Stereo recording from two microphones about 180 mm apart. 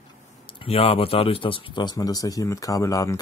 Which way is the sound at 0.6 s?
30° left (ahead or behind).